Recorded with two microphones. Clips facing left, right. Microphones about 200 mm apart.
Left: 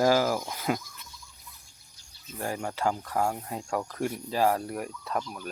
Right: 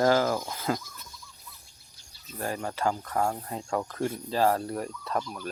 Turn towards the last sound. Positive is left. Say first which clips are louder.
# right 1 dB
turn(degrees=0)  # may be behind; listen again after turning